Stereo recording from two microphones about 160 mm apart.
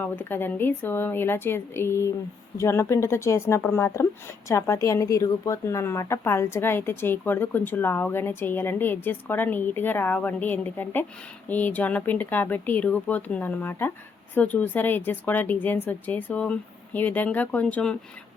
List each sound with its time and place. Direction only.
0.0 s a woman's voice: 15° left (ahead or behind)